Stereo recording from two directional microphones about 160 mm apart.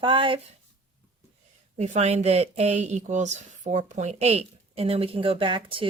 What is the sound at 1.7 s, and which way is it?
Speech, 45° right (ahead or behind).